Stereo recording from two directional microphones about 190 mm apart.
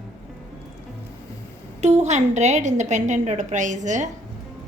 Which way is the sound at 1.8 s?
35° right (ahead or behind).